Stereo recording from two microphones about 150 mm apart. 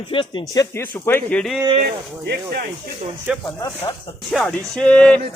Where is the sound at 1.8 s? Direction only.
90° right.